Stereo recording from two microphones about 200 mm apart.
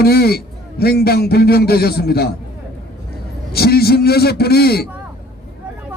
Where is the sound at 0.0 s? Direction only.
50° left (ahead or behind).